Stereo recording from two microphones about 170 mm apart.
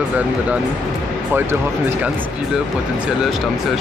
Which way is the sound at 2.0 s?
5° right (ahead or behind).